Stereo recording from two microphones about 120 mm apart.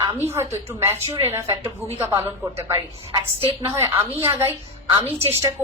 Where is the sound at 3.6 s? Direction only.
20° right (ahead or behind).